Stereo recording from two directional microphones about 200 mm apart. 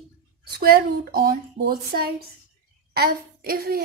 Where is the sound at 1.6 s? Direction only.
60° right (ahead or behind).